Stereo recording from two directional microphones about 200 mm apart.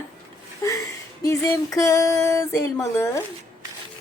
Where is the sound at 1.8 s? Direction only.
15° left (ahead or behind).